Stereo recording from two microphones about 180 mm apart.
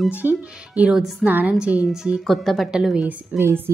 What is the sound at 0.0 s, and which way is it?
Speech, 10° right (ahead or behind).